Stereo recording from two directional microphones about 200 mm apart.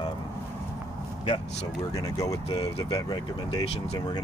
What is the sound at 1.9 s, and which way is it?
Speech, 15° left (ahead or behind).